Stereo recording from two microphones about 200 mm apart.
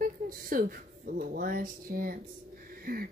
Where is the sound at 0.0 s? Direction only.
45° right (ahead or behind).